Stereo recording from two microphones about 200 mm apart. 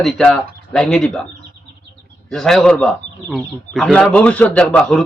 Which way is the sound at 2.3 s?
Centre (ahead or behind).